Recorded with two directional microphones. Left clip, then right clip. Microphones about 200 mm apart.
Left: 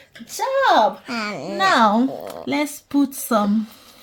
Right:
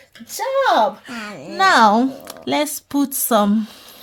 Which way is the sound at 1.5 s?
45° right (ahead or behind).